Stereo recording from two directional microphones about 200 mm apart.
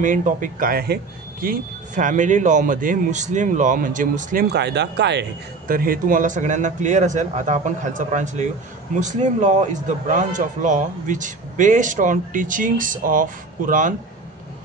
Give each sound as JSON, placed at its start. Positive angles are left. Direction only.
{"t": 0.0, "sound": "a man's voice", "side_deg": -40}
{"t": 5.7, "sound": "a man's voice", "side_deg": -45}